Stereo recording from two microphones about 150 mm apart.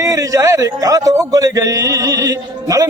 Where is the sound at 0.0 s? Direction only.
20° right (ahead or behind).